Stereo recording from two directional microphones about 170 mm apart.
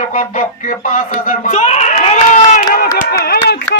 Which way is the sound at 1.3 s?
45° left (ahead or behind).